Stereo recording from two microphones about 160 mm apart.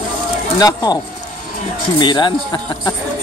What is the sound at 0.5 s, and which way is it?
Speech, 25° left (ahead or behind).